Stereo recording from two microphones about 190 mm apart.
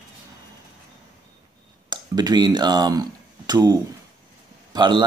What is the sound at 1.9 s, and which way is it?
Speech, 20° right (ahead or behind).